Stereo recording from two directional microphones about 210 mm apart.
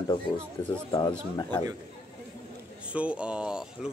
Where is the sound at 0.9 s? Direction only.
20° left (ahead or behind).